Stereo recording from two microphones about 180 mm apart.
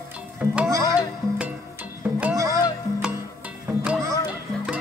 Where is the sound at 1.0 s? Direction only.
5° right (ahead or behind).